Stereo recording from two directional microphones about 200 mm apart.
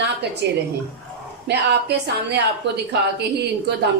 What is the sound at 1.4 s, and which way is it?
A woman's voice, 55° right (ahead or behind).